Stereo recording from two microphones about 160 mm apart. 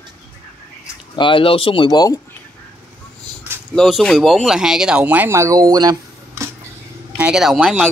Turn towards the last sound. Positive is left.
turn(degrees=0)  # may be behind; listen again after turning